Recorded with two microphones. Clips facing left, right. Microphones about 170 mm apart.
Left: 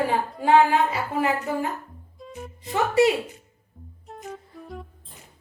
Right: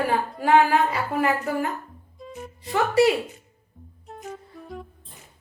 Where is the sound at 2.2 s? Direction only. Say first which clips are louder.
Right 1 dB; centre (ahead or behind).